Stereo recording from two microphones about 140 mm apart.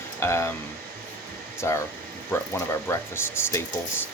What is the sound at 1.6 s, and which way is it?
Speech, 20° left (ahead or behind).